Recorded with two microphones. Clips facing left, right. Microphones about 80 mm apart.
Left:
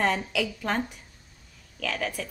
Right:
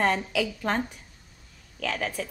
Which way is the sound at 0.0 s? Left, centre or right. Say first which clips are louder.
Right 1 dB; centre.